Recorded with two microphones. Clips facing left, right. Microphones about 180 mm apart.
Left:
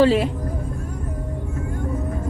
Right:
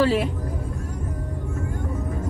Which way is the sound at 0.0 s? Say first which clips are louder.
Left 4 dB; 25° left (ahead or behind).